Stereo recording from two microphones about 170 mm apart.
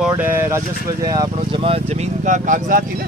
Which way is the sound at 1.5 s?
35° right (ahead or behind).